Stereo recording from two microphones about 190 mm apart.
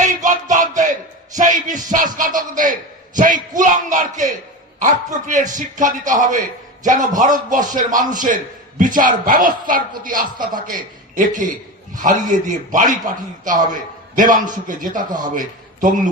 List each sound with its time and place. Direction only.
0.0 s music: 40° right (ahead or behind)
3.2 s speech: 45° right (ahead or behind)
3.6 s a sound: 45° right (ahead or behind)
4.8 s a man's voice: 40° right (ahead or behind)